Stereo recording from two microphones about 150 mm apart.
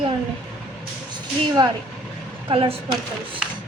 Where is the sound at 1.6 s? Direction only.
30° right (ahead or behind).